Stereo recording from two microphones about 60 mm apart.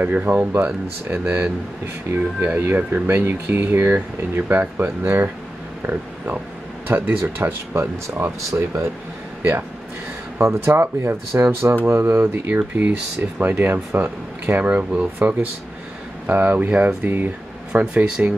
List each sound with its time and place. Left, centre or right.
0.0 s speech: right
2.6 s speech: right
3.9 s speech: right
8.4 s speech: right
9.4 s speech: right
14.6 s speech: right